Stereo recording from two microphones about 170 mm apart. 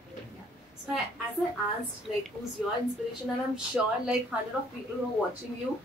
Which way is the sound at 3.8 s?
Centre (ahead or behind).